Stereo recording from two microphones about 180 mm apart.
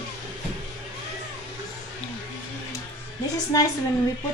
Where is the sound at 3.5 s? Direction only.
20° left (ahead or behind).